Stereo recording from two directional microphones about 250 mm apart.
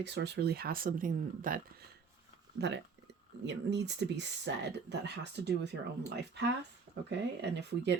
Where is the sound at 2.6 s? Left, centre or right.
Right.